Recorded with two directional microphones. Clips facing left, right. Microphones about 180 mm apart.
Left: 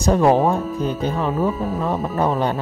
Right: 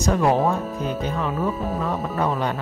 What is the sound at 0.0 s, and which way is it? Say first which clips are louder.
Speech: left 4 dB; 30° left (ahead or behind).